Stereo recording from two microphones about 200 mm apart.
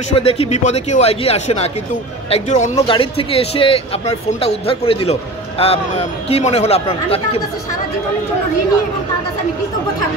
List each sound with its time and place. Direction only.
0.1 s speech: 30° left (ahead or behind)